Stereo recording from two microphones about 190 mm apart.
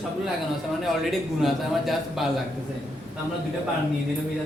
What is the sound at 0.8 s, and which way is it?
A man's voice, centre (ahead or behind).